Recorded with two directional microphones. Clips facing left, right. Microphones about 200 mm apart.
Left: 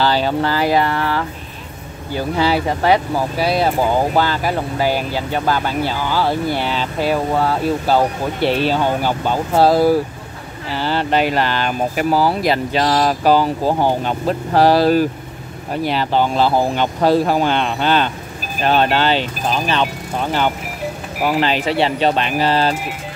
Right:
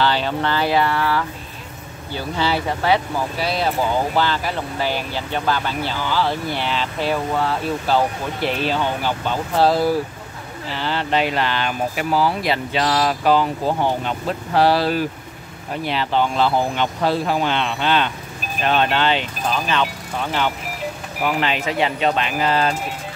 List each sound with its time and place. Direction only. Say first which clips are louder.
0.0 s speech: left 3 dB; 40° left (ahead or behind)
4.1 s speech: left 3 dB; 45° left (ahead or behind)
5.5 s speech: left 4 dB; 45° left (ahead or behind)